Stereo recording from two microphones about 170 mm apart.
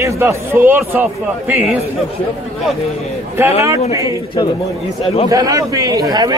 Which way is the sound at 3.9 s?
20° right (ahead or behind).